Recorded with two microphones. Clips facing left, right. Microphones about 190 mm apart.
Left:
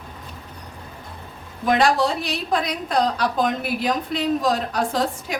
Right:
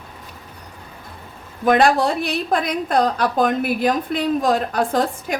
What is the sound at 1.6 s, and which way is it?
A woman's voice, 55° right (ahead or behind).